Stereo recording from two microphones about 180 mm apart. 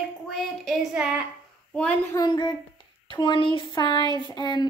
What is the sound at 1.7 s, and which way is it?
Speech, 5° left (ahead or behind).